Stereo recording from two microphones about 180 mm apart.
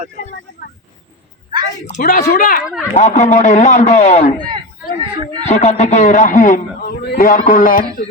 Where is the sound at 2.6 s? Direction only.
5° right (ahead or behind).